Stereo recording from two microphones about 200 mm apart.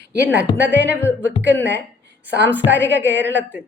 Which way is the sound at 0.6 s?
60° right (ahead or behind).